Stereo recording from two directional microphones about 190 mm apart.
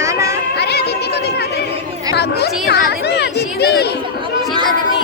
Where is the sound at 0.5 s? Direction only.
60° left (ahead or behind).